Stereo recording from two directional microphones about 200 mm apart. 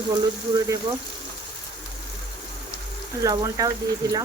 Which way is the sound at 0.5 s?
15° right (ahead or behind).